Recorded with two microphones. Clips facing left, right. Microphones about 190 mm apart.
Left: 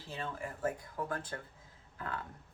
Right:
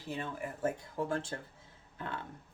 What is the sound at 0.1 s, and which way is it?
Speech, 20° right (ahead or behind).